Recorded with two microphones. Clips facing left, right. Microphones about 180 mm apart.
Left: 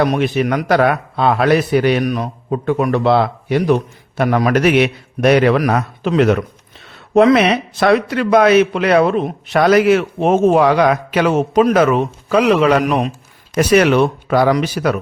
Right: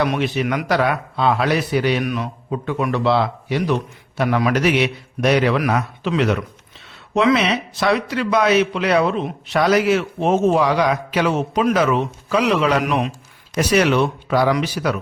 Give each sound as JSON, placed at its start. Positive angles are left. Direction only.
{"t": 0.0, "sound": "a man's voice", "side_deg": 45}
{"t": 13.6, "sound": "a man's voice", "side_deg": 55}